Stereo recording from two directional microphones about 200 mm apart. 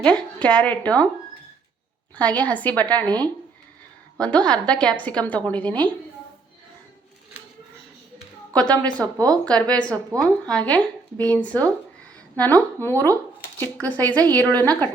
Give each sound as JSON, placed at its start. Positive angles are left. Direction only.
{"t": 0.0, "sound": "a woman's voice", "side_deg": 5}
{"t": 2.1, "sound": "a woman's voice", "side_deg": 5}
{"t": 8.8, "sound": "a woman's voice", "side_deg": 5}
{"t": 9.1, "sound": "speech", "side_deg": -15}
{"t": 9.4, "sound": "a woman's voice", "side_deg": 5}